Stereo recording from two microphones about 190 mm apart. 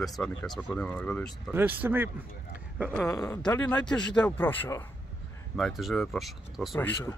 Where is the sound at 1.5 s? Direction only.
10° right (ahead or behind).